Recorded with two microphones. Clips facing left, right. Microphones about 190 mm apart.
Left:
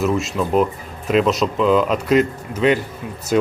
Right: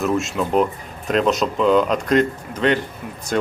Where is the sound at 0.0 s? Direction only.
Centre (ahead or behind).